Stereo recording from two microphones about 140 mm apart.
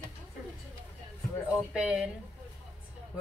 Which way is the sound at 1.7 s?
5° right (ahead or behind).